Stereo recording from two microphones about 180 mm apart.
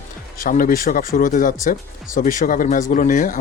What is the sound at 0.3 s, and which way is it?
Speech, 50° left (ahead or behind).